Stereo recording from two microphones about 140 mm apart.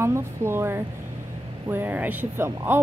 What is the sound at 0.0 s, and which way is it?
A woman's voice, 20° right (ahead or behind).